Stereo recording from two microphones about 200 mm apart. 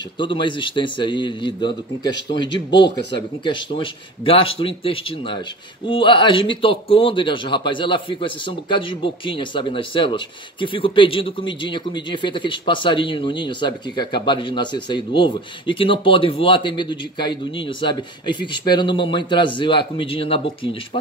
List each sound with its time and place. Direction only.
0.2 s speech: 25° left (ahead or behind)
3.4 s speech: 25° left (ahead or behind)